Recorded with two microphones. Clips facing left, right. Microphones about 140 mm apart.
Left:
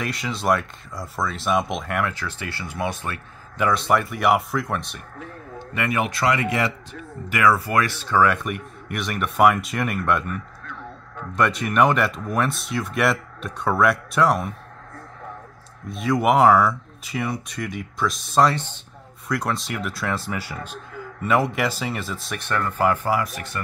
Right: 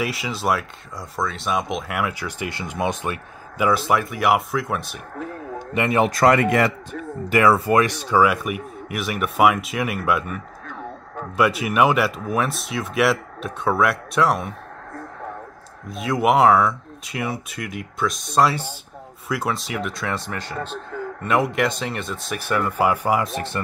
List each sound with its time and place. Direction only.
0.0 s speech: 5° right (ahead or behind); by 3.2 s 20° right (ahead or behind)
3.5 s speech: 5° right (ahead or behind)
5.7 s a man's voice: 25° right (ahead or behind)
6.1 s speech: 50° right (ahead or behind)
7.2 s speech: 30° right (ahead or behind); by 14.5 s centre (ahead or behind)
15.9 s speech: centre (ahead or behind); by 23.6 s 25° right (ahead or behind)